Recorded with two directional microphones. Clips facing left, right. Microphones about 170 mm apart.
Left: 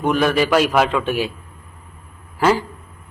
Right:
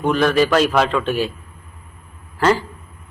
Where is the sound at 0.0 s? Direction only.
10° left (ahead or behind).